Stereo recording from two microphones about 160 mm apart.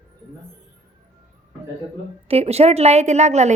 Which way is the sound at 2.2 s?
40° right (ahead or behind).